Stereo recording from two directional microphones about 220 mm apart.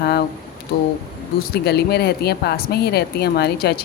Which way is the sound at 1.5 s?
45° left (ahead or behind).